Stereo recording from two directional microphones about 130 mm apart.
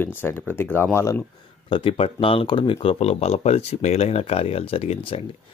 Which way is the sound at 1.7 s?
45° left (ahead or behind).